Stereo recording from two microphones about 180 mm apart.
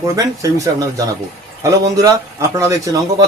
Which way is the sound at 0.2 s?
20° right (ahead or behind).